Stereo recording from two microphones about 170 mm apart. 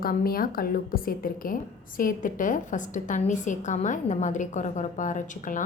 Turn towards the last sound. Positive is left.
turn(degrees=50)  # may be behind; listen again after turning